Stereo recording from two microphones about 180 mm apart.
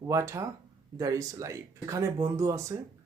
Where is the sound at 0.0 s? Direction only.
15° right (ahead or behind).